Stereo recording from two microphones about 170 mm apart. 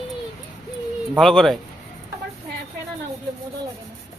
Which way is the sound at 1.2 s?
Centre (ahead or behind).